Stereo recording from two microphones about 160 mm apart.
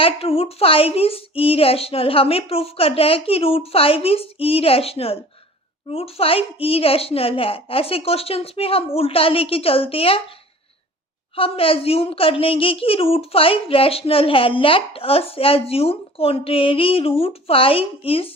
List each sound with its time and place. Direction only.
0.0 s a woman's voice: 35° left (ahead or behind)
11.3 s a woman's voice: 35° left (ahead or behind)